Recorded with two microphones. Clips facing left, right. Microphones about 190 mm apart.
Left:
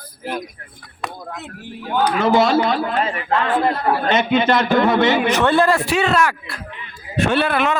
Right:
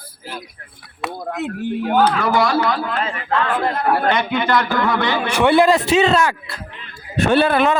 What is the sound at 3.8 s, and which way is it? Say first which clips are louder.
Speech: right 2 dB; 60° right (ahead or behind).